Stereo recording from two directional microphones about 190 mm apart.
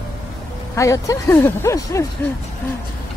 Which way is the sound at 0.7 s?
15° left (ahead or behind).